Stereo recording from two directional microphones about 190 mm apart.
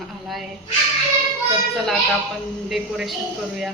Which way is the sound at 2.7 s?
Centre (ahead or behind).